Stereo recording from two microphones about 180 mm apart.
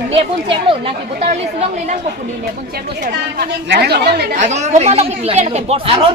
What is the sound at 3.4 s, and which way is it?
Speech, 65° right (ahead or behind).